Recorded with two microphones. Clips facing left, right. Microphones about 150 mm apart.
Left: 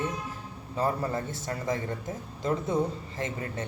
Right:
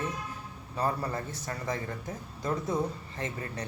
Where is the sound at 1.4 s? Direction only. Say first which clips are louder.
Left 4 dB; 25° left (ahead or behind).